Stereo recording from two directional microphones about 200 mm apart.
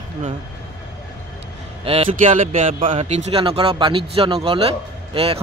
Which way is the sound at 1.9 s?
35° right (ahead or behind).